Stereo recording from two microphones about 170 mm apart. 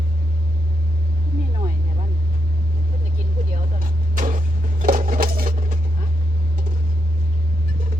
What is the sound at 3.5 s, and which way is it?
Vehicle, 50° right (ahead or behind).